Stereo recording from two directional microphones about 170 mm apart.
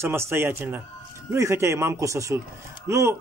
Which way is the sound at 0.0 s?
15° right (ahead or behind).